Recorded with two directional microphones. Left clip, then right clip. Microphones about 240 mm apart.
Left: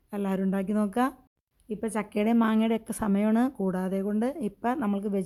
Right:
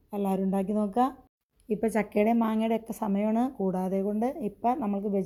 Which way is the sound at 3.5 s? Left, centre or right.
Left.